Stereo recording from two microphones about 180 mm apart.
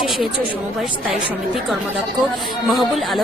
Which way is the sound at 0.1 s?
Centre (ahead or behind).